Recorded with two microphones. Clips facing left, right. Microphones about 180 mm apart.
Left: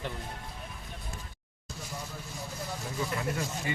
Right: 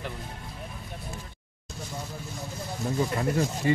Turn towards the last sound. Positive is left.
turn(degrees=-35)  # may be behind; listen again after turning